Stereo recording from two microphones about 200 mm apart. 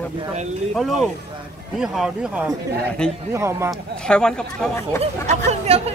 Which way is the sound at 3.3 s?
15° right (ahead or behind).